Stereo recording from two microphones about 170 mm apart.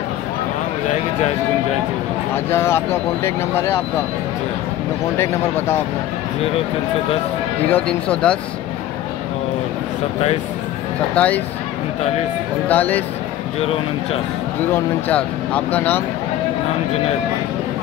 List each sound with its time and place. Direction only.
2.3 s speech: 15° left (ahead or behind)
5.1 s speech: 15° left (ahead or behind)
7.7 s speech: 5° left (ahead or behind)
11.1 s speech: 10° left (ahead or behind)
12.6 s speech: 10° left (ahead or behind)
14.7 s speech: 10° left (ahead or behind)